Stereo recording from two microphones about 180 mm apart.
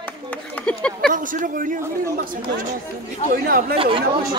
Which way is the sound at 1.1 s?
45° right (ahead or behind).